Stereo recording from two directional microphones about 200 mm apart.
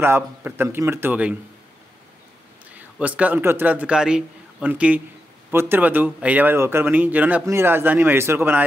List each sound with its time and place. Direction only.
0.0 s speech: 10° right (ahead or behind)
3.0 s speech: 5° right (ahead or behind)